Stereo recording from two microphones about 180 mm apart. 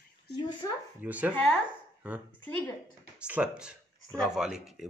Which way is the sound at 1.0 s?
10° right (ahead or behind).